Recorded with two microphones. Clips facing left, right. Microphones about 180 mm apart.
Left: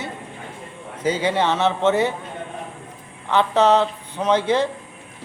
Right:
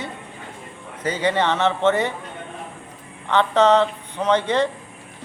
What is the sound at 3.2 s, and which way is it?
A man's voice, 10° left (ahead or behind).